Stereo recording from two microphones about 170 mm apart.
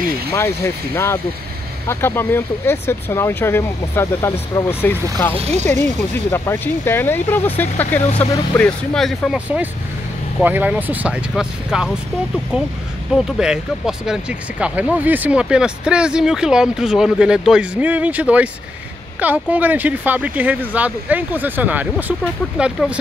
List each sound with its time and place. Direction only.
0.3 s speech: 15° left (ahead or behind)
10.4 s speech: 10° right (ahead or behind)
13.1 s speech: 5° right (ahead or behind)